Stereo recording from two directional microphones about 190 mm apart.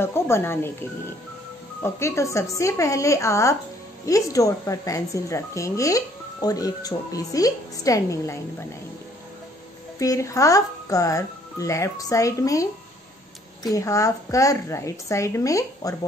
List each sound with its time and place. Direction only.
0.0 s speech: 10° left (ahead or behind)
9.9 s speech: 15° left (ahead or behind)
13.7 s speech: 15° left (ahead or behind)